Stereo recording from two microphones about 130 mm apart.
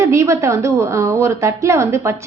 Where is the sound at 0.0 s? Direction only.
20° right (ahead or behind).